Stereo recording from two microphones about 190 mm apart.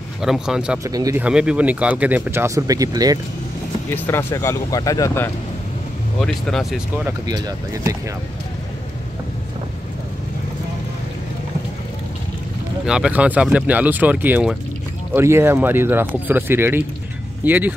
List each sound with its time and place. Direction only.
0.2 s speech: 5° right (ahead or behind)
0.8 s speech: 15° right (ahead or behind)
1.2 s speech: 5° right (ahead or behind)
3.9 s speech: 10° left (ahead or behind)
6.2 s speech: 5° left (ahead or behind)
7.1 s speech: 20° right (ahead or behind)
12.8 s speech: 5° right (ahead or behind)